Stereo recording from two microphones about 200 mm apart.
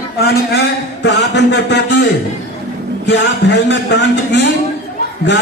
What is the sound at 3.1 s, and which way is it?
Speech, 60° left (ahead or behind).